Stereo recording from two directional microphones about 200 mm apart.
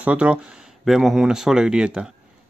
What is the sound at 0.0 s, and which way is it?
Speech, 5° right (ahead or behind).